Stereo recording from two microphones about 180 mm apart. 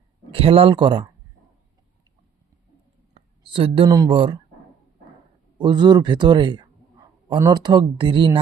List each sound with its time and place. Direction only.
0.3 s speech: 30° right (ahead or behind)
3.2 s speech: 30° right (ahead or behind)
5.5 s speech: 25° right (ahead or behind)